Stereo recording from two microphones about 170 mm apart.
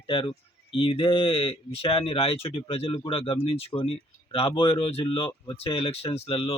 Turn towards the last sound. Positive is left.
turn(degrees=35)  # may be behind; listen again after turning